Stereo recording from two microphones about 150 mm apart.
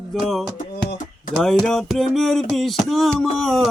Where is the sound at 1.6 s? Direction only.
Centre (ahead or behind).